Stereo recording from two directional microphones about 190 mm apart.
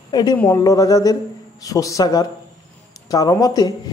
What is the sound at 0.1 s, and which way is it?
Speech, 20° left (ahead or behind).